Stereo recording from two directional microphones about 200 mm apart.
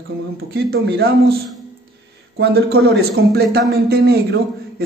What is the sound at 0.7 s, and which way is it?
Speech, 50° right (ahead or behind).